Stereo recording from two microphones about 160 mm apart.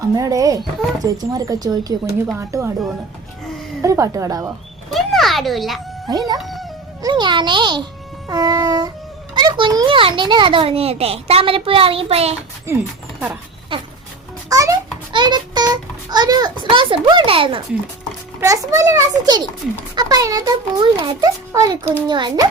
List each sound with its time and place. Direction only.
0.2 s a child's voice: 20° right (ahead or behind)
3.8 s a child's voice: 20° right (ahead or behind)
4.4 s a sound: centre (ahead or behind)
6.1 s a child's voice: 25° right (ahead or behind)
6.4 s music: centre (ahead or behind)
7.0 s a child's voice: 30° right (ahead or behind)
12.7 s a sound: 15° right (ahead or behind)
13.7 s a child's voice: 30° right (ahead or behind)
14.5 s a sound: 20° right (ahead or behind)
18.3 s a child's voice: 20° right (ahead or behind)